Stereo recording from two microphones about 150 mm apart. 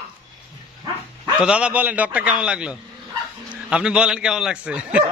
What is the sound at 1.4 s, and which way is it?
A man's voice, 5° right (ahead or behind).